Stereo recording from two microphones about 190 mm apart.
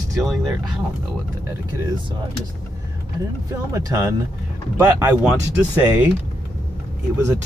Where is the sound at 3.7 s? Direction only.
15° right (ahead or behind).